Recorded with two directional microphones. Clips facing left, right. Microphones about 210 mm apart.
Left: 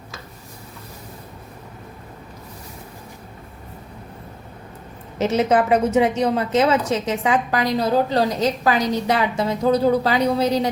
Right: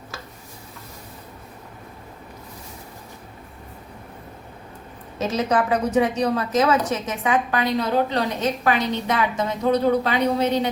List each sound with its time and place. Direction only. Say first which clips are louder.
5.1 s a woman's voice: left 4 dB; 25° left (ahead or behind)